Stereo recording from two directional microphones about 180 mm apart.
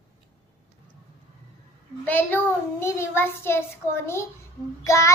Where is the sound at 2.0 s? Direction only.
10° left (ahead or behind).